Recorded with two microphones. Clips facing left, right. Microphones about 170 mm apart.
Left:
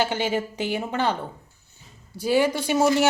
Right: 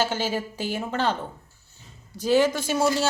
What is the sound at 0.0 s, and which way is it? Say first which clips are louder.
A woman's voice: left 2 dB; 15° left (ahead or behind).